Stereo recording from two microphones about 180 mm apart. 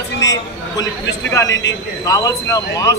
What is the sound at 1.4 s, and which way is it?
Speech, 90° left.